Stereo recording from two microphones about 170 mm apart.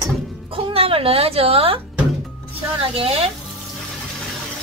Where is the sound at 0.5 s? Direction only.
35° right (ahead or behind).